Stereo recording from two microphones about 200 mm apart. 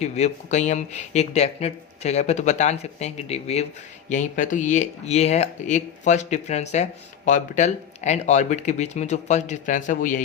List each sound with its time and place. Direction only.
0.0 s speech: 35° left (ahead or behind)